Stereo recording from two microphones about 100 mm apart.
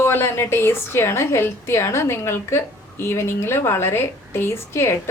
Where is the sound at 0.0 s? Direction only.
20° left (ahead or behind).